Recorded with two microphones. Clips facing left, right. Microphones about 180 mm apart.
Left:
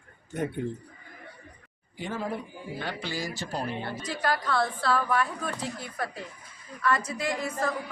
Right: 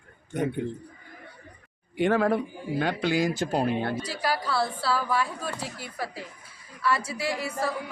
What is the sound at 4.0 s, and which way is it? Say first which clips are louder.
A woman's voice: even; 10° right (ahead or behind).